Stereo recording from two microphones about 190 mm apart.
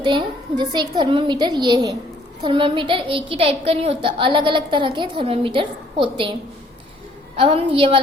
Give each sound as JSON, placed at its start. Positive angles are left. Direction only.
{"t": 0.0, "sound": "a woman's voice", "side_deg": -25}
{"t": 7.3, "sound": "a woman's voice", "side_deg": -30}